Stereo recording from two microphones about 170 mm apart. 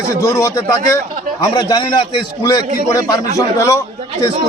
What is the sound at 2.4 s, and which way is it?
A man's voice, 20° left (ahead or behind).